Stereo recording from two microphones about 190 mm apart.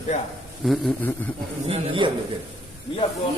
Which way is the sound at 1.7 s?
25° right (ahead or behind).